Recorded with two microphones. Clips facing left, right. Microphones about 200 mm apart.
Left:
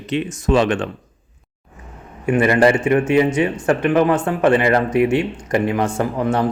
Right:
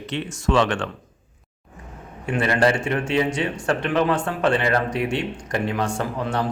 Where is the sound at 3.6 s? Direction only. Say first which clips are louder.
Left 5 dB; 15° left (ahead or behind).